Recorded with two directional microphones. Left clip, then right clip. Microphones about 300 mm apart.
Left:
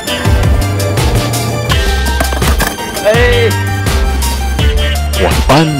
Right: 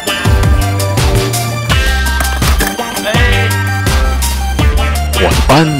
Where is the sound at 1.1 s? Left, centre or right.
Centre.